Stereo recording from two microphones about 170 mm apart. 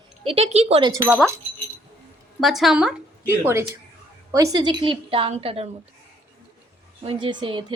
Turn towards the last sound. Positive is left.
turn(degrees=-30)  # may be behind; listen again after turning